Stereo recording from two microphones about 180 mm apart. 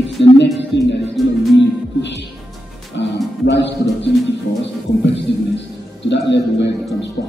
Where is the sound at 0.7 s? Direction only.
75° left (ahead or behind).